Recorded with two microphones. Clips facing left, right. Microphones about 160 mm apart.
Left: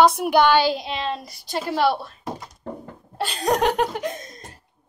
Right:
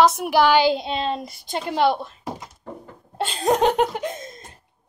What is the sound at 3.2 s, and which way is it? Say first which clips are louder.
Laughter: right 2 dB; 20° right (ahead or behind).